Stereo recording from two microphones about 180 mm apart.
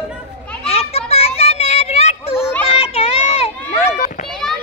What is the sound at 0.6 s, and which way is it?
Children playing, 35° left (ahead or behind).